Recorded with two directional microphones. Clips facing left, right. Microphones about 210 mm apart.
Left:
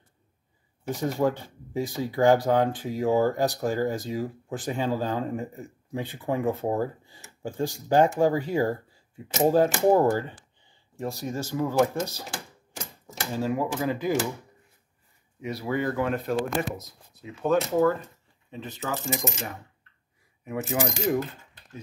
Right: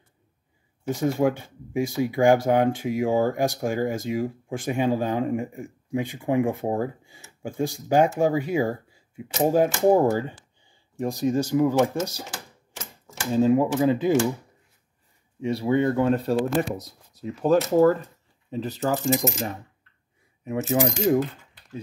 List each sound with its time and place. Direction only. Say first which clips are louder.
0.8 s speech: right 3 dB; 10° right (ahead or behind)
13.3 s speech: right 8 dB; 20° right (ahead or behind)
15.4 s speech: right 6 dB; 25° right (ahead or behind)
20.4 s speech: right 5 dB; 25° right (ahead or behind)